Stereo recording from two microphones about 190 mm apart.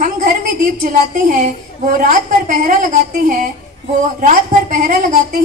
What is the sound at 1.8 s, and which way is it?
Speech, 45° right (ahead or behind).